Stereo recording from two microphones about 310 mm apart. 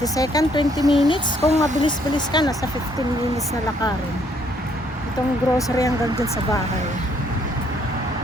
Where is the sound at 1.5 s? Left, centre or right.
Right.